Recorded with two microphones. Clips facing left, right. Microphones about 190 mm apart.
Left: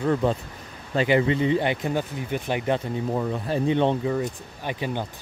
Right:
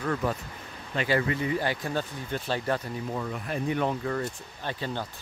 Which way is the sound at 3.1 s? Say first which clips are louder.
Left 7 dB; 30° left (ahead or behind).